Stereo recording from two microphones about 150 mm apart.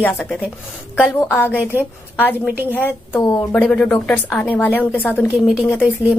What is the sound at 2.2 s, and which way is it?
A woman's voice, 15° left (ahead or behind).